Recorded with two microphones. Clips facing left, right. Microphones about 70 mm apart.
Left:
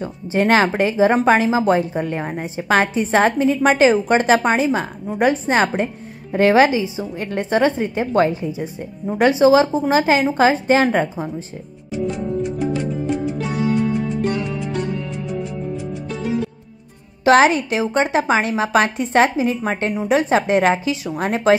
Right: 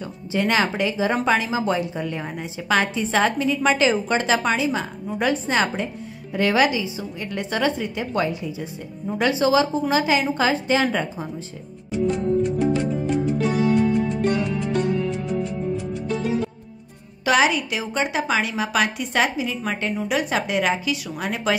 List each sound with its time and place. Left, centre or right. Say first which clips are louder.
0.4 s speech: left 6 dB; left
3.5 s speech: left 4 dB; left
3.8 s speech: left 6 dB; left
12.4 s music: right 1 dB; centre
17.2 s speech: left 6 dB; left